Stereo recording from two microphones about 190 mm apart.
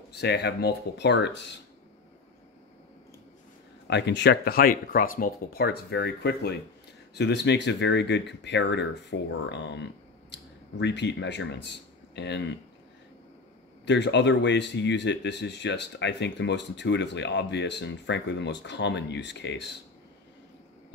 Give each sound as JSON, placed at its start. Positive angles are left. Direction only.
{"t": 0.1, "sound": "speech", "side_deg": 60}
{"t": 3.8, "sound": "speech", "side_deg": 65}
{"t": 13.8, "sound": "speech", "side_deg": 70}